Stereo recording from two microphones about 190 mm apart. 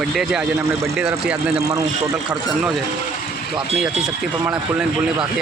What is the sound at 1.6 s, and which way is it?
Speech, 15° right (ahead or behind).